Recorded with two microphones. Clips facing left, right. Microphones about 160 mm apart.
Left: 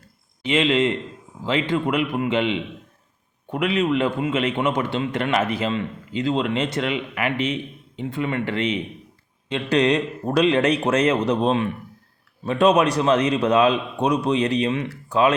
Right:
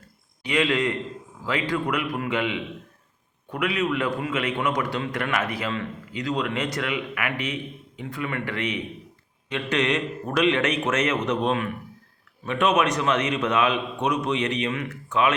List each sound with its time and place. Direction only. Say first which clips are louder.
0.4 s a man's voice: left 4 dB; 25° left (ahead or behind)